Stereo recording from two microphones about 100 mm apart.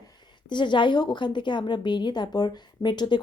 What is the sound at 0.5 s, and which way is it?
A woman's voice, 50° left (ahead or behind).